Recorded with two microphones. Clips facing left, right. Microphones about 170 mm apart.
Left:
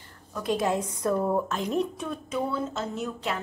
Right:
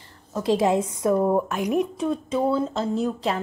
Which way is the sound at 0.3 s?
25° right (ahead or behind).